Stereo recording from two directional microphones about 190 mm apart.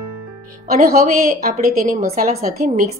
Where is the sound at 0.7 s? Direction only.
50° right (ahead or behind).